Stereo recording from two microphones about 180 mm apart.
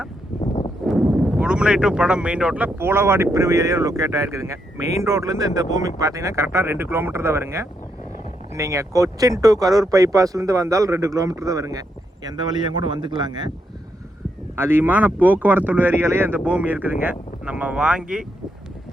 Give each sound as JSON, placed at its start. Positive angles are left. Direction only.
{"t": 0.9, "sound": "speech", "side_deg": 0}
{"t": 14.5, "sound": "speech", "side_deg": -10}